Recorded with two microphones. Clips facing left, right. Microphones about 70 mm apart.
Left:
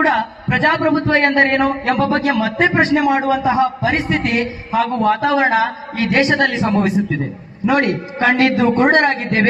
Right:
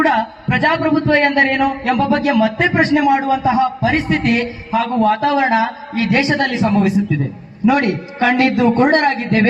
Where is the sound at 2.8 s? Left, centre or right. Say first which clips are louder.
Right 1 dB; centre.